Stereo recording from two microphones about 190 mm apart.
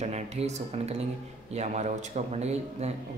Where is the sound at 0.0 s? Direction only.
35° right (ahead or behind).